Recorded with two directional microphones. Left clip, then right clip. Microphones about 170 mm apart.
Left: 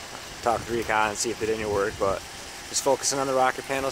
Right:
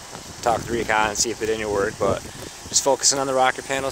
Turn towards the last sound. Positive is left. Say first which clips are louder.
# right 3 dB
turn(degrees=-15)  # may be behind; listen again after turning